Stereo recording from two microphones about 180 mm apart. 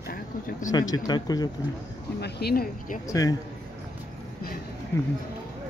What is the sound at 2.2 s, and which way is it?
Speech, 60° left (ahead or behind).